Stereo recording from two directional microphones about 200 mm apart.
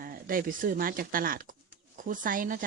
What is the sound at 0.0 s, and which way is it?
Speech, 45° right (ahead or behind).